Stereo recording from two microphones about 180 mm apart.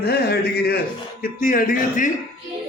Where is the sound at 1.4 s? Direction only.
50° left (ahead or behind).